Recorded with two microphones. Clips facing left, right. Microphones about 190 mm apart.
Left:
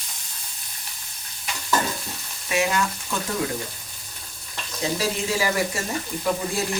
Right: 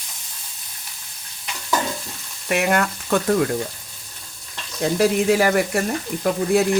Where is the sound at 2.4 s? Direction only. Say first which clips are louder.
Right 4 dB; 60° right (ahead or behind).